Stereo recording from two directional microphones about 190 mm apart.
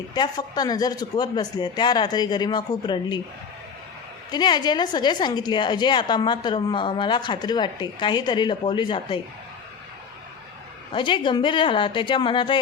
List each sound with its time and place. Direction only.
0.1 s a woman's voice: 20° left (ahead or behind)
4.3 s a woman's voice: 20° left (ahead or behind)
10.9 s a woman's voice: 25° left (ahead or behind)